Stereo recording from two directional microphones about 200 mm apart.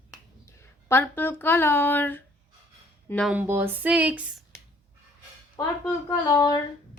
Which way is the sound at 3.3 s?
10° right (ahead or behind).